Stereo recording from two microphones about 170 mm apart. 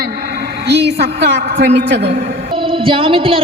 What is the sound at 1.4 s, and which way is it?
Speech, 55° right (ahead or behind).